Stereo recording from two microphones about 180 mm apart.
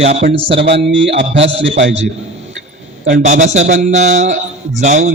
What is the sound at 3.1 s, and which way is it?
A man's voice, 40° right (ahead or behind).